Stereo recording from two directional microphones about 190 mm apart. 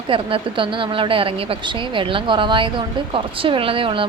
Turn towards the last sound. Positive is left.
turn(degrees=-30)  # may be behind; listen again after turning